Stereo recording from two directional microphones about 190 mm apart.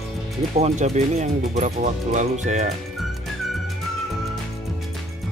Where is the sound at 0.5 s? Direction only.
35° right (ahead or behind).